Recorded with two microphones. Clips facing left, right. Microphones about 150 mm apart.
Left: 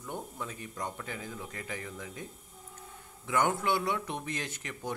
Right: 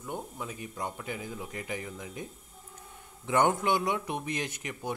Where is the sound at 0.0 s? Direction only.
10° right (ahead or behind).